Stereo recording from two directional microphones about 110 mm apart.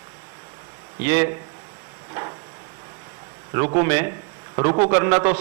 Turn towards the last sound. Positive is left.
turn(degrees=-25)  # may be behind; listen again after turning